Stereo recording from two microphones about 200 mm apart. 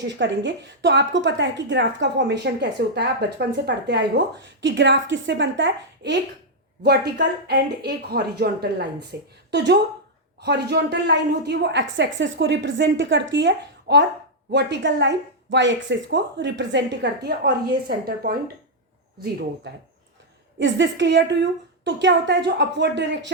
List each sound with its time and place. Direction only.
0.0 s a woman's voice: 65° right (ahead or behind)